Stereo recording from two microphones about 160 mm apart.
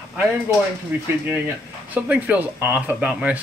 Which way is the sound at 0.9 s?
10° right (ahead or behind).